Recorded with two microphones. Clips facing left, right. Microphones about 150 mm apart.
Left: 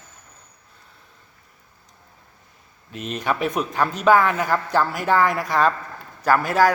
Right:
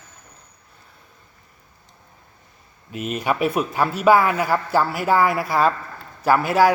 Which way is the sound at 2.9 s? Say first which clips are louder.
Right 2 dB; 5° right (ahead or behind).